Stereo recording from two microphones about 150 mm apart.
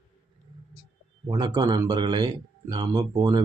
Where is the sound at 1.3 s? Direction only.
30° right (ahead or behind).